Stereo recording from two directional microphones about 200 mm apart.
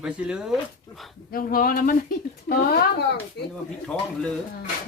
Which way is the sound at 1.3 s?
45° left (ahead or behind).